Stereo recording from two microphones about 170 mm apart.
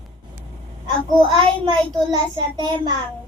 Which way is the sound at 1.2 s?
30° right (ahead or behind).